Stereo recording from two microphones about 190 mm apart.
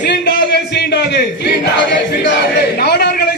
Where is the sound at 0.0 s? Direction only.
60° left (ahead or behind).